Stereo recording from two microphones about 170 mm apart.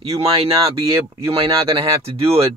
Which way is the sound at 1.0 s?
20° right (ahead or behind).